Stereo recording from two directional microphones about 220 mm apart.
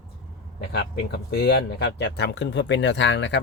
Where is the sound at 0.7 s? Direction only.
50° left (ahead or behind).